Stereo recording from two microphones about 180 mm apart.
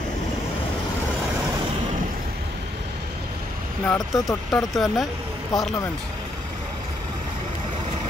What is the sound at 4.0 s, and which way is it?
Speech, 20° left (ahead or behind).